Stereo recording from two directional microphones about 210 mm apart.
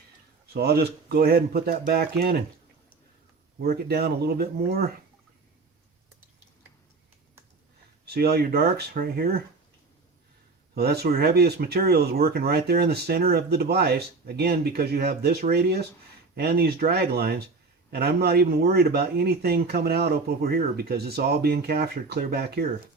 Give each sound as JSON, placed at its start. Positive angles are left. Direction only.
{"t": 0.5, "sound": "speech", "side_deg": -50}
{"t": 3.6, "sound": "speech", "side_deg": -45}
{"t": 8.0, "sound": "speech", "side_deg": -50}
{"t": 10.8, "sound": "speech", "side_deg": -50}